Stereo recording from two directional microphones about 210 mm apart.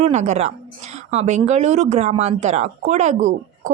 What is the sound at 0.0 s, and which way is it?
A woman's voice, 35° right (ahead or behind).